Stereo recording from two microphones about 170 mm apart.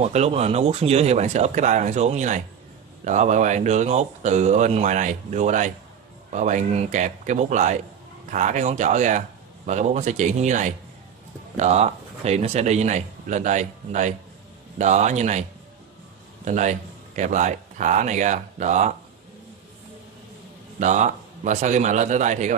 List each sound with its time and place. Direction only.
0.0 s speech: 40° right (ahead or behind)
16.4 s speech: 45° right (ahead or behind)
20.8 s speech: 45° right (ahead or behind)